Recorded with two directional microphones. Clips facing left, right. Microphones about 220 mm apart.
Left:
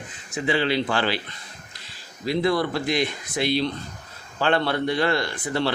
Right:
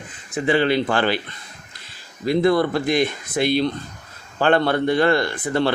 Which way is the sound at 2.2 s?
50° right (ahead or behind).